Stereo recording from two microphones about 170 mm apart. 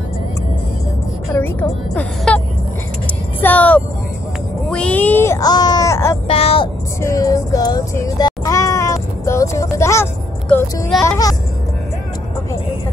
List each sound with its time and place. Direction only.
1.3 s music: 10° left (ahead or behind)
3.3 s vehicle: 10° left (ahead or behind)
4.6 s a sound: 5° left (ahead or behind)
6.2 s a sound: 35° left (ahead or behind)
7.0 s music: 20° left (ahead or behind)
11.1 s music: 20° left (ahead or behind)